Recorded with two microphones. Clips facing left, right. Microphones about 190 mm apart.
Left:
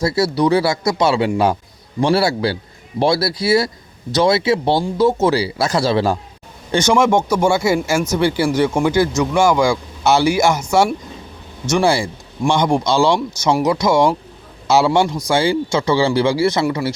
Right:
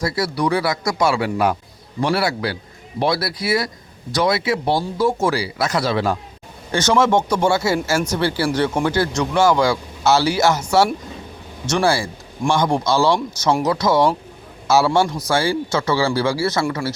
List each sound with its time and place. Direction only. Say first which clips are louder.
0.0 s speech: left 5 dB; 25° left (ahead or behind)
6.7 s a man's voice: left 2 dB; 15° left (ahead or behind)